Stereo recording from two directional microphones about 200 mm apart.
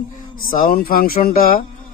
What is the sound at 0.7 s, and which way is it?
Speech, 45° left (ahead or behind).